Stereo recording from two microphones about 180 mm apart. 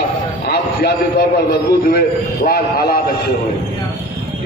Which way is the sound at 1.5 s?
65° left (ahead or behind).